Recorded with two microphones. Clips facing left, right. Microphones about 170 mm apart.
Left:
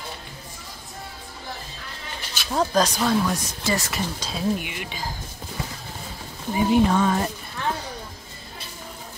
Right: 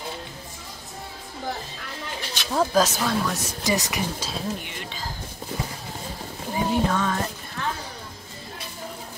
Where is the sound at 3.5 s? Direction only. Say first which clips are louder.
Right 1 dB; 15° right (ahead or behind).